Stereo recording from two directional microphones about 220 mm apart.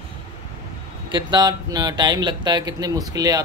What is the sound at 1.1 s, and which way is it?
A man's voice, 20° right (ahead or behind).